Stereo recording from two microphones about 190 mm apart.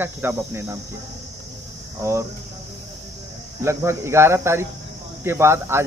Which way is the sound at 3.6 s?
15° right (ahead or behind).